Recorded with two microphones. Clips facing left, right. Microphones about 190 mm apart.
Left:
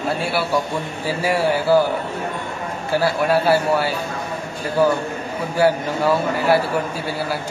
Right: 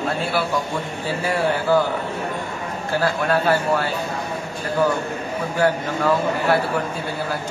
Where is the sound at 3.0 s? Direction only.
10° left (ahead or behind).